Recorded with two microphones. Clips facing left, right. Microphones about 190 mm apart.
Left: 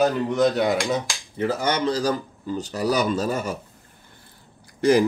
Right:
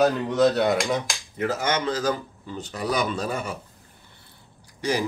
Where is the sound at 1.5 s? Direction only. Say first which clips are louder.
Left 3 dB; 35° left (ahead or behind).